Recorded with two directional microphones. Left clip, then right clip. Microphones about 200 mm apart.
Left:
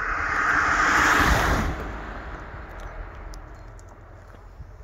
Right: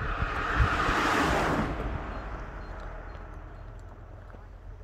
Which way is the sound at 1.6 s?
50° left (ahead or behind).